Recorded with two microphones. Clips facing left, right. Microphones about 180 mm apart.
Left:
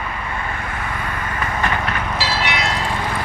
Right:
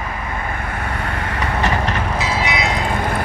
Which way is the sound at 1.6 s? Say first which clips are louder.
Right 2 dB; 35° right (ahead or behind).